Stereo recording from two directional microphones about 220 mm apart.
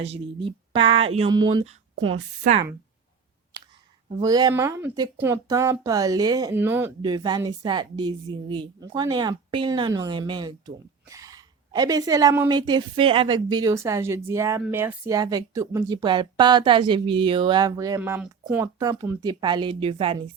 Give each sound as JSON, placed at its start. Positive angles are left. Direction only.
{"t": 0.1, "sound": "speech", "side_deg": -25}
{"t": 4.2, "sound": "a woman's voice", "side_deg": -15}